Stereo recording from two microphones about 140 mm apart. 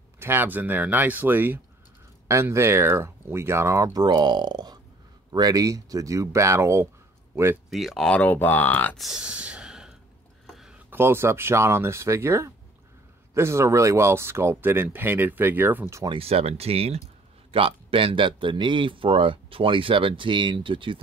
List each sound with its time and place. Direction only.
0.2 s speech: 15° right (ahead or behind)
7.7 s speech: centre (ahead or behind)
8.9 s speech: centre (ahead or behind)
10.4 s a sound: 5° right (ahead or behind)
10.9 s speech: 15° right (ahead or behind)
16.1 s speech: 45° right (ahead or behind)